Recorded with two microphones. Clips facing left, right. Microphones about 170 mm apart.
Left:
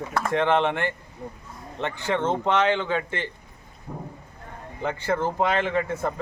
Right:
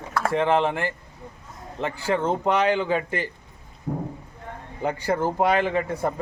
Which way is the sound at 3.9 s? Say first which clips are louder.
Right 8 dB; 65° right (ahead or behind).